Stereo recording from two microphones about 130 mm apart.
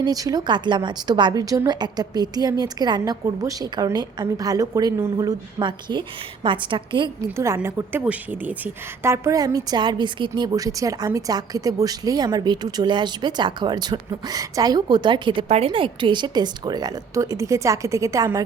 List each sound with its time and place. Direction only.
0.0 s a woman's voice: 30° right (ahead or behind)
7.3 s a woman's voice: 20° right (ahead or behind); by 15.4 s 40° right (ahead or behind)
15.4 s a woman's voice: 50° right (ahead or behind); by 18.4 s 25° right (ahead or behind)